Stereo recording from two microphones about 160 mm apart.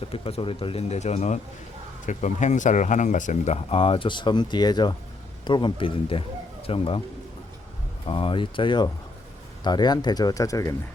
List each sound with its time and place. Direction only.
0.1 s speech: 40° left (ahead or behind)
8.0 s speech: 35° left (ahead or behind)